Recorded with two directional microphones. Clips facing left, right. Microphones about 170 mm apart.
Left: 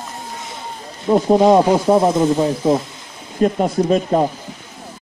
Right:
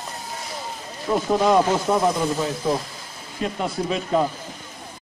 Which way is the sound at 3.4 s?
45° left (ahead or behind).